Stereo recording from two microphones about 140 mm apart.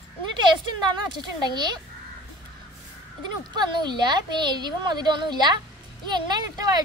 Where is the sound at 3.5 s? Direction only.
30° right (ahead or behind).